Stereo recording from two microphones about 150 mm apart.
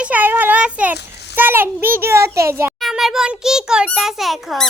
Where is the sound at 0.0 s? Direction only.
10° right (ahead or behind).